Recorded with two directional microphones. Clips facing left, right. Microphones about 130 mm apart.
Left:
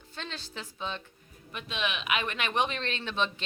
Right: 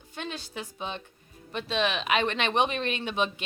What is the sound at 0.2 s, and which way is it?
Speech, 15° right (ahead or behind).